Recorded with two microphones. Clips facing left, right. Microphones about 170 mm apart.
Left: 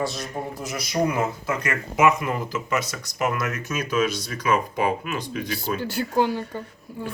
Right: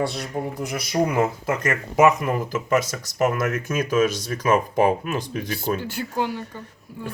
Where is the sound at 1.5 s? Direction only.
45° right (ahead or behind).